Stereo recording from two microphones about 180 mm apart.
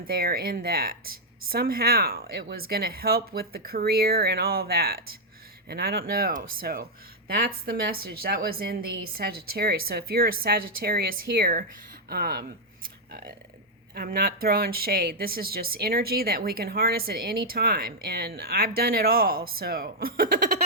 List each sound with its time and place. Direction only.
0.1 s speech: 55° right (ahead or behind)